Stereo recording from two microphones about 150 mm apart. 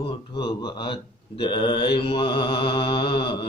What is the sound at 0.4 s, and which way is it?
Mantra, 30° left (ahead or behind).